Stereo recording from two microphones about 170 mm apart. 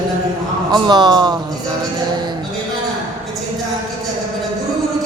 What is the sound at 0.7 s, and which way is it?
Speech, 25° right (ahead or behind).